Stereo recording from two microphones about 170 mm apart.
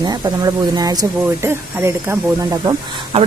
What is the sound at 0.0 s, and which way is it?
Speech, 25° right (ahead or behind).